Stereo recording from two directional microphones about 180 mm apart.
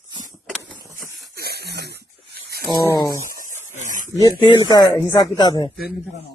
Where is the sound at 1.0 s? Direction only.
60° right (ahead or behind).